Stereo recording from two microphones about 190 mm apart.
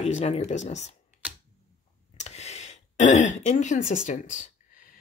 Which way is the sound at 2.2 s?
35° left (ahead or behind).